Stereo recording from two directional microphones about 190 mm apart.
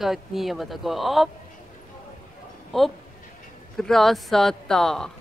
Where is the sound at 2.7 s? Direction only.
Centre (ahead or behind).